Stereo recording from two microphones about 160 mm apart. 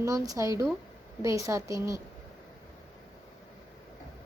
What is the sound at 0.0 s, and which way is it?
A woman's voice, 20° right (ahead or behind).